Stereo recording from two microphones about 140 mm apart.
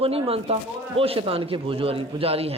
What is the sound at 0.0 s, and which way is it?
Speech, 45° right (ahead or behind).